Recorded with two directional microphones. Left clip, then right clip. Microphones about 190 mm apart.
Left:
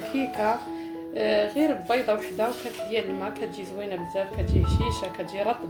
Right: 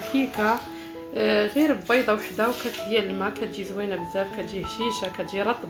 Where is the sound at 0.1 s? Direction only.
40° right (ahead or behind).